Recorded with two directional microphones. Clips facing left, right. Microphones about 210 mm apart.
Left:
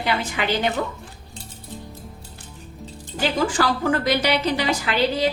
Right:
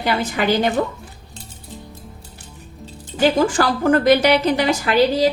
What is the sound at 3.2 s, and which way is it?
A woman's voice, 50° right (ahead or behind).